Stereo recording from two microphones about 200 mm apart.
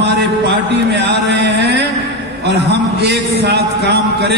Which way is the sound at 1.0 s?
60° right (ahead or behind).